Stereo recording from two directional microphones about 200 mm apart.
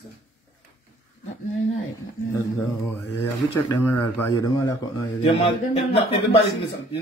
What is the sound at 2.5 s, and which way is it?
Mantra, 10° left (ahead or behind).